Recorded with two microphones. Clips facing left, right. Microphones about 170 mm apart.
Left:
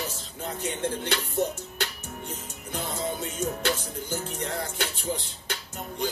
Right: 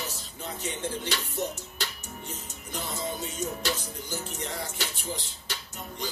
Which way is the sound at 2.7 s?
55° left (ahead or behind).